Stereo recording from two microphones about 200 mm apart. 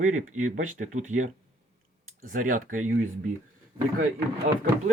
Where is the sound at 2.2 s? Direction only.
40° right (ahead or behind).